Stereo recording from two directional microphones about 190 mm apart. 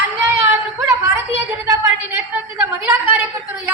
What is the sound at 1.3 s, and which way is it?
A woman's voice, 15° right (ahead or behind).